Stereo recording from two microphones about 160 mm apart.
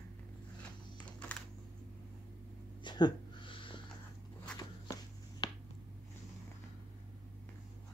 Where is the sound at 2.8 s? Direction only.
25° left (ahead or behind).